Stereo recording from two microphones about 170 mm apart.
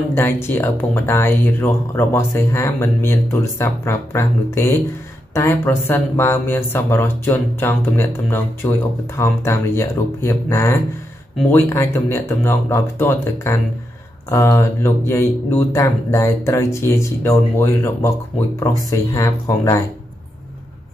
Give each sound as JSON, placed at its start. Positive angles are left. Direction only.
{"t": 0.1, "sound": "speech", "side_deg": 15}